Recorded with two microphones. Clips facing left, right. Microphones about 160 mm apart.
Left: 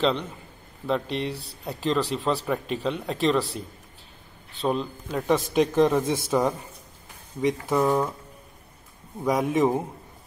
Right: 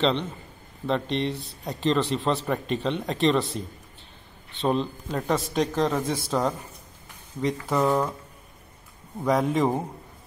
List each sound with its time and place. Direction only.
0.8 s speech: 5° left (ahead or behind)
7.4 s speech: 10° left (ahead or behind)
9.2 s speech: centre (ahead or behind)